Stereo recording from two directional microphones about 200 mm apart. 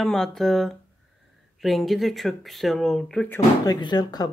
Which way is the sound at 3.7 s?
20° left (ahead or behind).